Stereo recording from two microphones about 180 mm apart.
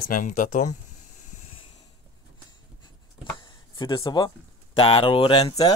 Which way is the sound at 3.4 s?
25° left (ahead or behind).